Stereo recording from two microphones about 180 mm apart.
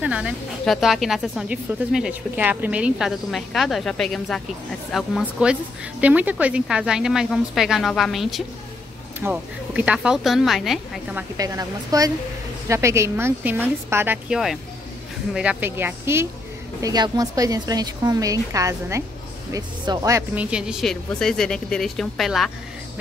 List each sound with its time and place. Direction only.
0.0 s a woman's voice: 5° right (ahead or behind)
11.3 s a woman's voice: 20° right (ahead or behind); by 22.5 s centre (ahead or behind)